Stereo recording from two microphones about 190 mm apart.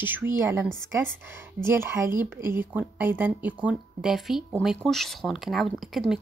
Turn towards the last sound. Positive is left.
turn(degrees=0)  # may be behind; listen again after turning